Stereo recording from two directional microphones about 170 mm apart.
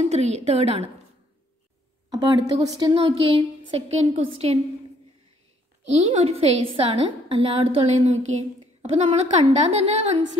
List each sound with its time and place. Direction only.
0.1 s a woman's voice: 40° right (ahead or behind)
2.0 s a woman's voice: 25° right (ahead or behind)
5.9 s a woman's voice: 35° right (ahead or behind)